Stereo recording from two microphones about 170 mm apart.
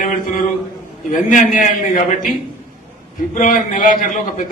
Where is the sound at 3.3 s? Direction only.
50° left (ahead or behind).